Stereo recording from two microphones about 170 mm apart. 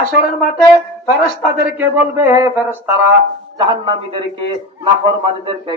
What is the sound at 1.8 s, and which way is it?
Speech, 10° right (ahead or behind).